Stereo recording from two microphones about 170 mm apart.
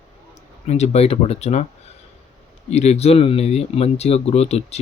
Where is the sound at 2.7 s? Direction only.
40° left (ahead or behind).